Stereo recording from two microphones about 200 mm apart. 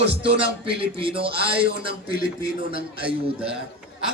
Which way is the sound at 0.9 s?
25° right (ahead or behind).